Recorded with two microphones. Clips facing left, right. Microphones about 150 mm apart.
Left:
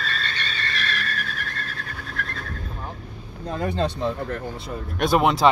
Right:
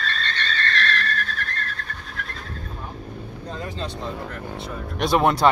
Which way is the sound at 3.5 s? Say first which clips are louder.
Left 8 dB; 60° left (ahead or behind).